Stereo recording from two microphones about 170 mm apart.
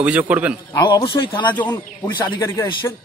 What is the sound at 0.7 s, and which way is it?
A man's voice, 25° left (ahead or behind).